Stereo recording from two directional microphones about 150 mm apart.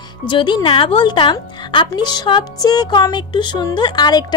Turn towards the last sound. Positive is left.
turn(degrees=30)  # may be behind; listen again after turning